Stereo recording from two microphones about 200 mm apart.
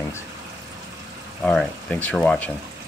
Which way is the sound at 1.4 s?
5° left (ahead or behind).